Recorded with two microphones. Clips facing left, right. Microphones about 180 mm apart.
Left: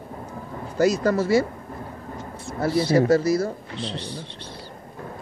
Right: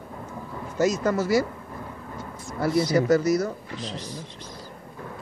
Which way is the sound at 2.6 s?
30° left (ahead or behind).